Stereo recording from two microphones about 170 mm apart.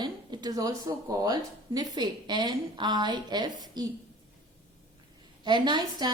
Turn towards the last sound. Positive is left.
turn(degrees=-25)  # may be behind; listen again after turning